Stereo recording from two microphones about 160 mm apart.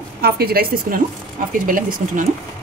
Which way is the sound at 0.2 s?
75° right (ahead or behind).